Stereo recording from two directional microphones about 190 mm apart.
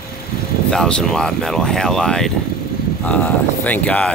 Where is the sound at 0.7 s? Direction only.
5° left (ahead or behind).